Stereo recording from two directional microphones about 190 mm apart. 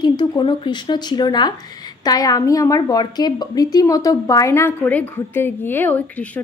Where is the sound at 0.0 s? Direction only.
25° left (ahead or behind).